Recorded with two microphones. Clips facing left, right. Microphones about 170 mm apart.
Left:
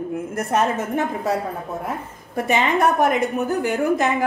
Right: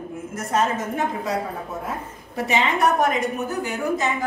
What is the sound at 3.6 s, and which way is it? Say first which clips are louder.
Speech: left 5 dB; 60° left (ahead or behind).